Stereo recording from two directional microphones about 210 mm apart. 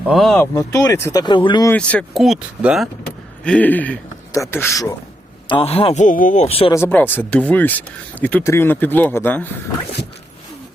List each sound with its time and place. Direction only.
0.0 s speech: centre (ahead or behind)
0.5 s speech: 15° left (ahead or behind)
1.7 s speech: 5° left (ahead or behind)
5.5 s speech: 25° left (ahead or behind)
6.7 s speech: 10° left (ahead or behind)